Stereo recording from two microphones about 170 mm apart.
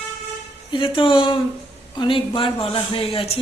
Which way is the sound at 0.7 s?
30° left (ahead or behind).